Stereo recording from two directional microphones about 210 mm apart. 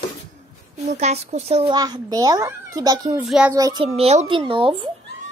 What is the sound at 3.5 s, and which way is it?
A child's voice, 20° right (ahead or behind).